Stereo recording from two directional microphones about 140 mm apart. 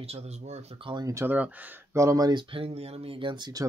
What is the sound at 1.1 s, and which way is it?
Speech, 15° right (ahead or behind).